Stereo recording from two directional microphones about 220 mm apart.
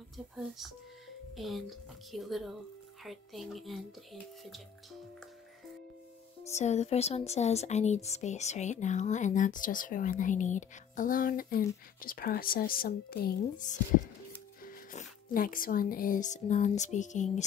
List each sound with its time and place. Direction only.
1.3 s speech: centre (ahead or behind)
6.4 s speech: 30° left (ahead or behind)